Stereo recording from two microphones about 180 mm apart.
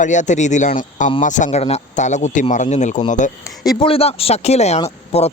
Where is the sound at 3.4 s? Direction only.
20° left (ahead or behind).